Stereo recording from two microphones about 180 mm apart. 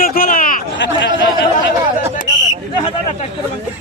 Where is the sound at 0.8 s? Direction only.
85° left.